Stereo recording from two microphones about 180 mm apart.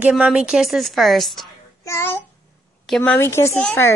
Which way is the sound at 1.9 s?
15° left (ahead or behind).